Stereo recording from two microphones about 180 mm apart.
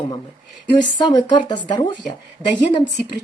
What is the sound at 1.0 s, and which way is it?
Speech, 25° left (ahead or behind).